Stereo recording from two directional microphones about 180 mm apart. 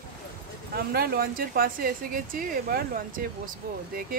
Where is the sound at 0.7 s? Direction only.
60° right (ahead or behind).